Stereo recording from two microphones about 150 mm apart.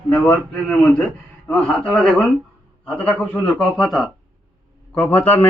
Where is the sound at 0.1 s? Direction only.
5° left (ahead or behind).